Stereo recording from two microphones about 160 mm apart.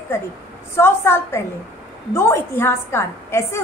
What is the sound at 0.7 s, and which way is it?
A woman's voice, 15° left (ahead or behind).